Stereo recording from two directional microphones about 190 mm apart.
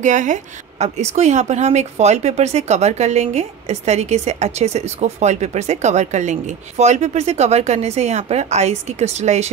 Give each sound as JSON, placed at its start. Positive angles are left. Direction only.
{"t": 0.0, "sound": "speech", "side_deg": -40}